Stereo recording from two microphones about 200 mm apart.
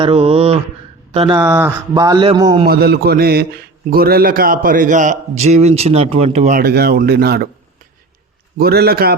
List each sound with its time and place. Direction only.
0.0 s mantra: 30° right (ahead or behind)
1.1 s speech: 30° right (ahead or behind)
1.4 s speech: 10° right (ahead or behind)
2.2 s mantra: 20° right (ahead or behind)
2.6 s a man's voice: 50° right (ahead or behind); by 6.6 s 35° right (ahead or behind)
6.6 s speech: 50° right (ahead or behind)
8.5 s speech: 50° right (ahead or behind)